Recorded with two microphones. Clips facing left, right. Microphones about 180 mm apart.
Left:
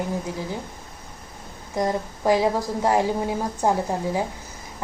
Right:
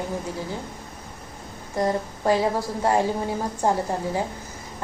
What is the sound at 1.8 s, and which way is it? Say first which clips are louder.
A woman's voice: even; 15° left (ahead or behind).